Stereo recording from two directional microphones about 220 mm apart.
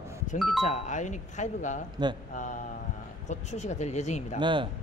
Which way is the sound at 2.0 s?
20° right (ahead or behind).